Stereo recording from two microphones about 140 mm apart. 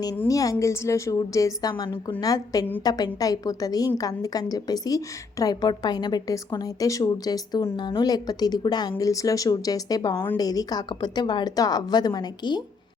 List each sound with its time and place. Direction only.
0.3 s a woman's voice: 25° left (ahead or behind)